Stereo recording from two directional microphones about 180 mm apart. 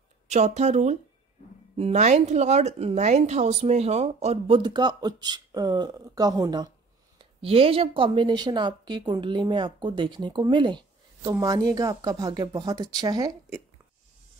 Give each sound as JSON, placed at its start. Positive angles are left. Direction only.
{"t": 0.3, "sound": "a woman's voice", "side_deg": -40}
{"t": 7.2, "sound": "a woman's voice", "side_deg": -30}